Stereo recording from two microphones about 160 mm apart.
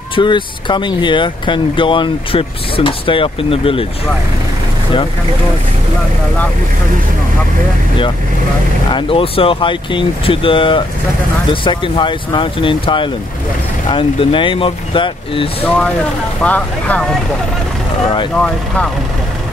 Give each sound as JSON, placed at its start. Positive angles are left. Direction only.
{"t": 0.1, "sound": "speech", "side_deg": 30}
{"t": 8.9, "sound": "speech", "side_deg": 35}
{"t": 16.4, "sound": "speech", "side_deg": 10}
{"t": 18.3, "sound": "speech", "side_deg": 5}